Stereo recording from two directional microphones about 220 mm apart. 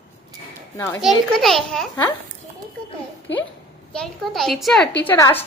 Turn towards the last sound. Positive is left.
turn(degrees=10)  # may be behind; listen again after turning